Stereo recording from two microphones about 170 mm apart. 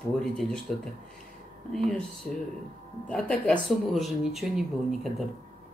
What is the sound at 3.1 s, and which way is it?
Speech, 5° left (ahead or behind).